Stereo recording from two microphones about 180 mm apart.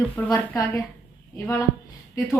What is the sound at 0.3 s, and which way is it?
Speech, 15° left (ahead or behind).